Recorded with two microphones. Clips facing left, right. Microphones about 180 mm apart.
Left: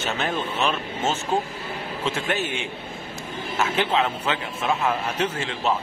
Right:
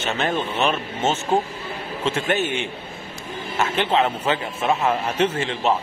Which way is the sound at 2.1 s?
Centre (ahead or behind).